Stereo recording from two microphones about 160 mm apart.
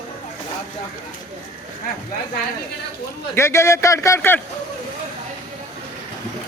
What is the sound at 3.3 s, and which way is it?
A man's voice, 15° left (ahead or behind).